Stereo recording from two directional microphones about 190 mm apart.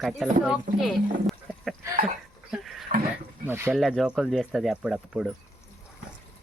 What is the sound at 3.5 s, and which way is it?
Speech, 15° right (ahead or behind).